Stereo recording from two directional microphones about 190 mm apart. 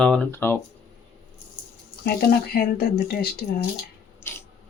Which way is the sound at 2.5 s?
55° left (ahead or behind).